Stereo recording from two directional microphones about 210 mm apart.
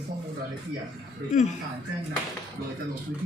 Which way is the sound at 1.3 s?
35° left (ahead or behind).